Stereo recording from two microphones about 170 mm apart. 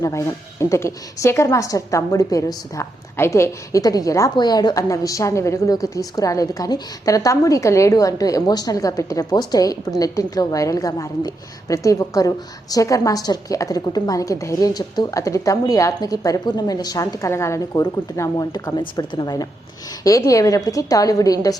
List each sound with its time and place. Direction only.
0.0 s a woman's voice: 20° left (ahead or behind)